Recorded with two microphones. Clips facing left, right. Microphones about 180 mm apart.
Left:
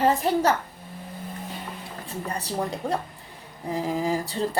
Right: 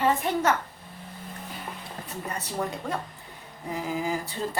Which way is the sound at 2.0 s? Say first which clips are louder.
Left 4 dB; 35° left (ahead or behind).